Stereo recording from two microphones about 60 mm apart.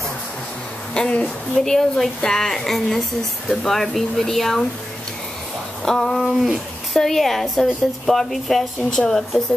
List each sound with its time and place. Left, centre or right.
0.9 s speech: centre
1.2 s a woman's voice: centre
5.9 s a woman's voice: centre
6.1 s a woman's voice: centre